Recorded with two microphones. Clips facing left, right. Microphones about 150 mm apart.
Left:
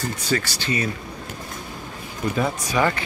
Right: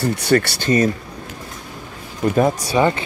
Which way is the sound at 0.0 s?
65° right (ahead or behind).